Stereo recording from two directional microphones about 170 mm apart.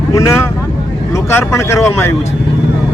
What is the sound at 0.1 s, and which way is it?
Speech, 20° left (ahead or behind).